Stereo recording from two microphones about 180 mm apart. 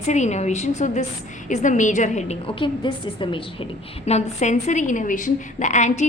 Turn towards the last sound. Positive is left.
turn(degrees=40)  # may be behind; listen again after turning